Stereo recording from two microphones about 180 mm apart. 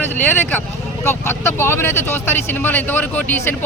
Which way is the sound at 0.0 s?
10° left (ahead or behind).